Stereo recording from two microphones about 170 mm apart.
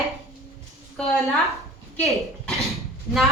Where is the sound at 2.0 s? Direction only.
Centre (ahead or behind).